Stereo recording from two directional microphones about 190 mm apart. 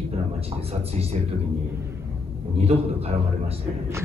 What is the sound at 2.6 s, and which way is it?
Speech, 30° right (ahead or behind).